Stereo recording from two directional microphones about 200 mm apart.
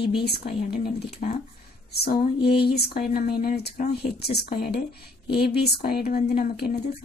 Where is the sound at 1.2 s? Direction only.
40° left (ahead or behind).